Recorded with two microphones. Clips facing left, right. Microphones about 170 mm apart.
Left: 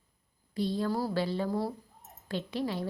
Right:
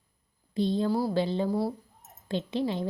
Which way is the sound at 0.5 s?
25° right (ahead or behind).